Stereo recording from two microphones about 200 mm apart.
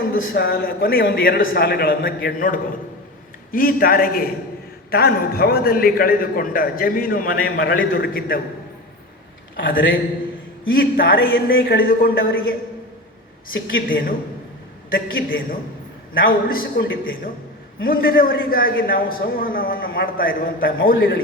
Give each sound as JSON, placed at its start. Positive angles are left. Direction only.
{"t": 0.3, "sound": "a man's voice", "side_deg": 50}
{"t": 9.6, "sound": "a man's voice", "side_deg": 45}
{"t": 13.7, "sound": "a man's voice", "side_deg": 45}
{"t": 17.8, "sound": "a man's voice", "side_deg": 45}